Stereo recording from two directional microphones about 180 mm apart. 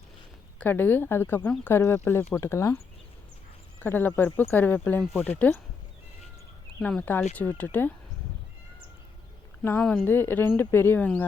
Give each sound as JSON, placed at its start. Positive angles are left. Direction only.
{"t": 0.6, "sound": "speech", "side_deg": 10}
{"t": 6.7, "sound": "speech", "side_deg": 10}
{"t": 9.6, "sound": "speech", "side_deg": 10}